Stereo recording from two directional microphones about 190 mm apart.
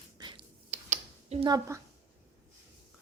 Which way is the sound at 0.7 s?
35° right (ahead or behind).